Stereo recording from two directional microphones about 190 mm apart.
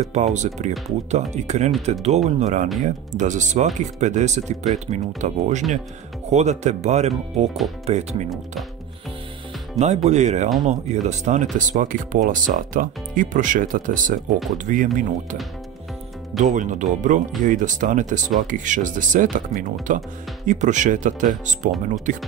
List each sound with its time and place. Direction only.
0.0 s speech: 35° right (ahead or behind)
10.0 s speech: 35° right (ahead or behind)
16.3 s speech: 40° right (ahead or behind)